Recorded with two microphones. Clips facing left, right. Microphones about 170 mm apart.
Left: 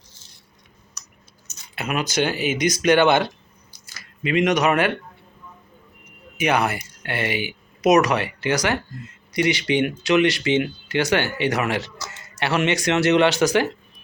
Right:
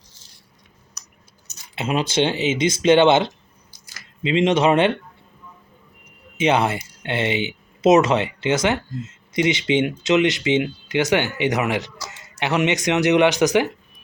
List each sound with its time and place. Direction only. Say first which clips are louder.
1.7 s speech: right 3 dB; 25° right (ahead or behind)
6.3 s speech: right 2 dB; 25° right (ahead or behind)